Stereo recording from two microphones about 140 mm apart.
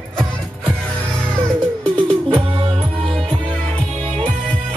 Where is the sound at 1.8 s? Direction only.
5° left (ahead or behind).